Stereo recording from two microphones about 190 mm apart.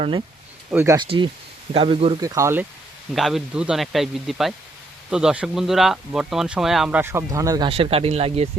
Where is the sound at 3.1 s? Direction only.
Centre (ahead or behind); by 7.6 s 15° right (ahead or behind).